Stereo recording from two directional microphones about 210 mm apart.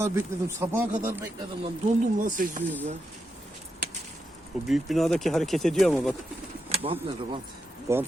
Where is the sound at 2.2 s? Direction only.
40° right (ahead or behind).